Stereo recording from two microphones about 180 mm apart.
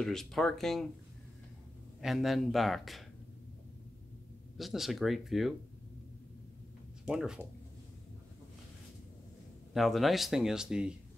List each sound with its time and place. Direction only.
0.0 s speech: centre (ahead or behind)
2.0 s speech: centre (ahead or behind)
4.6 s speech: centre (ahead or behind)
7.1 s speech: 5° right (ahead or behind)
9.8 s speech: centre (ahead or behind)